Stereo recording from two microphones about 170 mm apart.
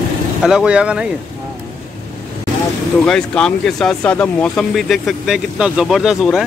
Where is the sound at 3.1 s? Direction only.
5° left (ahead or behind).